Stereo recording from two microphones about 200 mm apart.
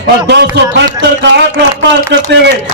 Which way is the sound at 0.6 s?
60° right (ahead or behind).